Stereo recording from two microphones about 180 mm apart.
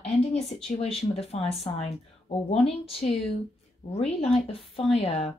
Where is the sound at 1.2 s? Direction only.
35° left (ahead or behind).